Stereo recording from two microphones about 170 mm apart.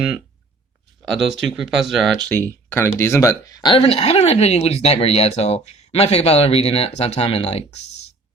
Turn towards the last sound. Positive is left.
turn(degrees=35)  # may be behind; listen again after turning